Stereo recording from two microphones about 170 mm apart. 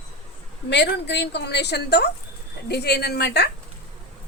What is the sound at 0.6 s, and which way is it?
A woman's voice, 90° left.